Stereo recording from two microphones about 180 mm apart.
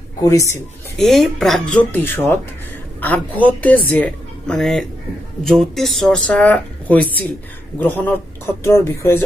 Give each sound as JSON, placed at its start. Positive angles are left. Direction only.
{"t": 0.2, "sound": "speech", "side_deg": 15}
{"t": 0.9, "sound": "speech", "side_deg": 0}
{"t": 3.4, "sound": "speech", "side_deg": 10}